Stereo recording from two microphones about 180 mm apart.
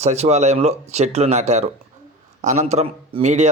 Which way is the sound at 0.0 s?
35° right (ahead or behind).